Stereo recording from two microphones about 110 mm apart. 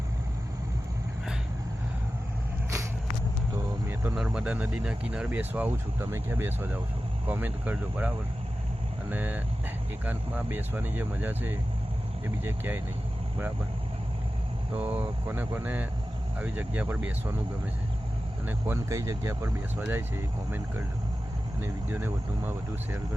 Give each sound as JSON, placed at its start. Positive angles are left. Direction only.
{"t": 4.1, "sound": "speech", "side_deg": -5}
{"t": 14.8, "sound": "speech", "side_deg": -15}
{"t": 18.4, "sound": "speech", "side_deg": -25}
{"t": 19.7, "sound": "speech", "side_deg": -15}
{"t": 21.6, "sound": "speech", "side_deg": -20}